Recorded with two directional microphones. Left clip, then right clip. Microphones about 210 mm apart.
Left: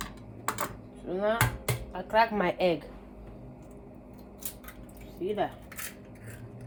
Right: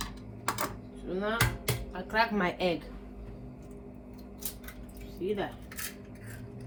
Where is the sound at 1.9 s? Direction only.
40° left (ahead or behind).